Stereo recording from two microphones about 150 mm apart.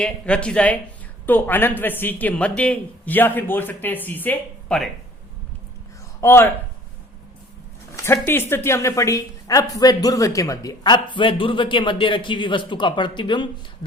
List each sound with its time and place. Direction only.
0.0 s a woman's voice: 5° left (ahead or behind)
6.1 s a man's voice: 15° left (ahead or behind)
7.9 s a woman's voice: 15° left (ahead or behind)